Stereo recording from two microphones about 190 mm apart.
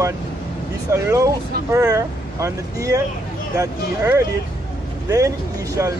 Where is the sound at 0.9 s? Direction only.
15° right (ahead or behind).